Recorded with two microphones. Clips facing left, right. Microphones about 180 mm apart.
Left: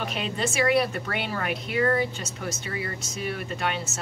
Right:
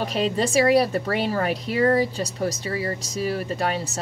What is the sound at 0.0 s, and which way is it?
Speech, 35° right (ahead or behind).